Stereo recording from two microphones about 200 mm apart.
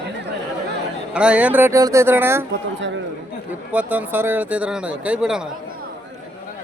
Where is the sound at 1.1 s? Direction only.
5° right (ahead or behind).